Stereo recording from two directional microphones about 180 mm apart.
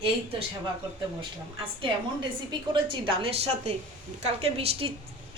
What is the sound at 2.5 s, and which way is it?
A woman's voice, 25° right (ahead or behind).